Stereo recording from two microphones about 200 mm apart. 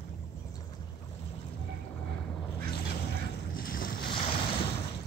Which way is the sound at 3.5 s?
45° left (ahead or behind).